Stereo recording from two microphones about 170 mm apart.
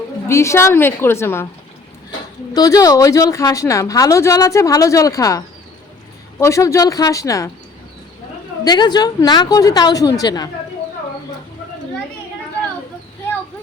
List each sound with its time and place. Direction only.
0.3 s a woman's voice: 15° left (ahead or behind)
2.5 s a woman's voice: 20° left (ahead or behind)
6.4 s a woman's voice: 15° left (ahead or behind)
8.6 s a woman's voice: 25° left (ahead or behind)